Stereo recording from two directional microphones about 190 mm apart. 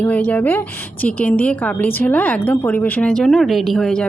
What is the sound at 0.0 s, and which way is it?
A woman's voice, 5° left (ahead or behind).